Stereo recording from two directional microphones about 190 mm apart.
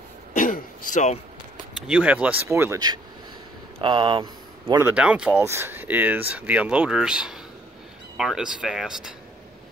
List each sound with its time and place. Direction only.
0.3 s throat clearing: 45° left (ahead or behind)
1.8 s speech: 5° right (ahead or behind); by 4.8 s 25° right (ahead or behind)
4.8 s speech: 5° right (ahead or behind)